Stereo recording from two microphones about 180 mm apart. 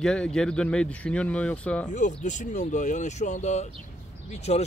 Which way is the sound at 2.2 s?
40° left (ahead or behind).